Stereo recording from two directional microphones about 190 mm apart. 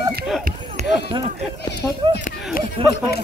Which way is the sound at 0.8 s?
40° right (ahead or behind).